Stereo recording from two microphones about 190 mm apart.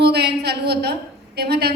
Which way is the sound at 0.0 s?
60° right (ahead or behind).